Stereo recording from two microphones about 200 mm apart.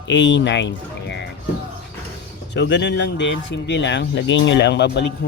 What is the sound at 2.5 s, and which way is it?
Speech, 60° left (ahead or behind).